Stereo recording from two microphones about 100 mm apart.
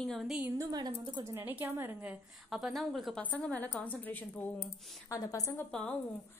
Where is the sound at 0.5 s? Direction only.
35° right (ahead or behind).